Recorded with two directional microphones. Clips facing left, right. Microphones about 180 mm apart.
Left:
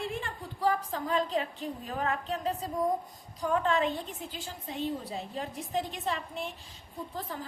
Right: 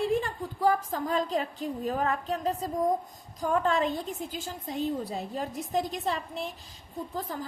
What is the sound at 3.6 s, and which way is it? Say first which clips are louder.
A woman's voice: right 2 dB; 40° right (ahead or behind).